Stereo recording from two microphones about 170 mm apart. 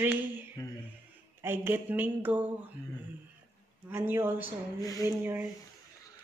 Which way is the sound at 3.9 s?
10° right (ahead or behind).